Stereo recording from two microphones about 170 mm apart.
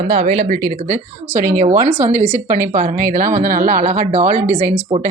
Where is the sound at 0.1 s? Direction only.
55° right (ahead or behind).